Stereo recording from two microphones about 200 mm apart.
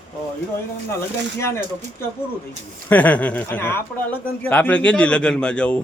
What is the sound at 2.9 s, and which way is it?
A man's voice, 10° left (ahead or behind).